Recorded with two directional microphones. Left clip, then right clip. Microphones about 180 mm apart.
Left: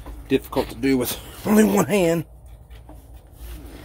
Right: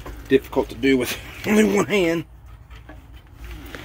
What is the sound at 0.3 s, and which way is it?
Speech, 10° left (ahead or behind).